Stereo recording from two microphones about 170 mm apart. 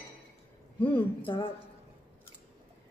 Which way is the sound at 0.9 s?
30° left (ahead or behind).